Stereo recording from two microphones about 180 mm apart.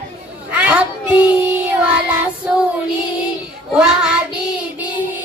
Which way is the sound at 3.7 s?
5° right (ahead or behind).